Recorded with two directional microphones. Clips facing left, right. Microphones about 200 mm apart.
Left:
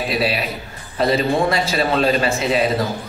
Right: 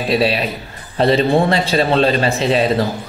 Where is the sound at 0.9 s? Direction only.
30° right (ahead or behind).